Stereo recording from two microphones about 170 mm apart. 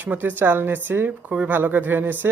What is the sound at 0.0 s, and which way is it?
Speech, 10° right (ahead or behind).